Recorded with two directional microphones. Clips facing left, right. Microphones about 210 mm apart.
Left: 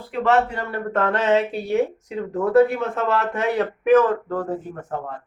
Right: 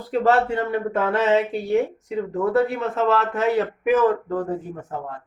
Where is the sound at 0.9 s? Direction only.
10° right (ahead or behind).